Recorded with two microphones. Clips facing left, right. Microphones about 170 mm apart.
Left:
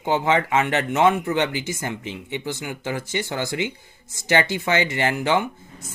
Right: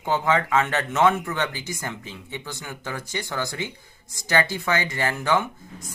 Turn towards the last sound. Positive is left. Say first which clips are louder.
# left 2 dB
turn(degrees=15)  # may be behind; listen again after turning